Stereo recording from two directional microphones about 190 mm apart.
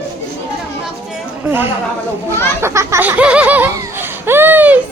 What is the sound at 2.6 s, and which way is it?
Laughter, 15° right (ahead or behind).